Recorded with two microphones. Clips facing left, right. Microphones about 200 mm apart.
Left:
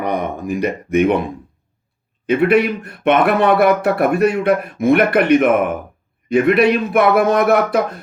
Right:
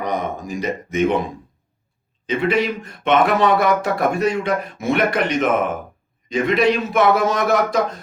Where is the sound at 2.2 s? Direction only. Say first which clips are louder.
Left 5 dB; 60° left (ahead or behind).